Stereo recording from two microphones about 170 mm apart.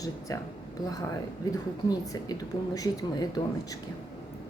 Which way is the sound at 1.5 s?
20° left (ahead or behind).